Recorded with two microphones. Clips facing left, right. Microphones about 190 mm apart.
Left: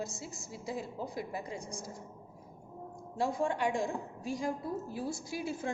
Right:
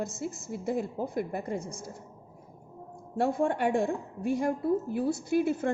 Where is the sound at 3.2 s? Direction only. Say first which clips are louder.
Right 5 dB; 55° right (ahead or behind).